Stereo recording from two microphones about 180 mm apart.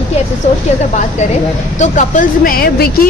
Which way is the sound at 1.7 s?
45° left (ahead or behind).